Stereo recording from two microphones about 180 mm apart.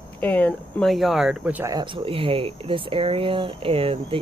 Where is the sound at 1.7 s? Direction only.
25° right (ahead or behind).